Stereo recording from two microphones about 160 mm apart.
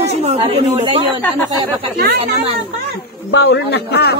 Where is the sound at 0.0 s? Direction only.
45° right (ahead or behind).